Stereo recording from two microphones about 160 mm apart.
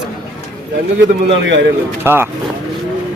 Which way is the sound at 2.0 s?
15° right (ahead or behind).